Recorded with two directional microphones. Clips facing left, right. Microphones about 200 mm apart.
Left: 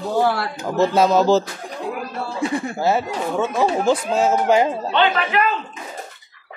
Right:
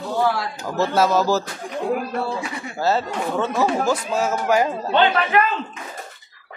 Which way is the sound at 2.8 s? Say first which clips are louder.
Right 1 dB; 10° left (ahead or behind).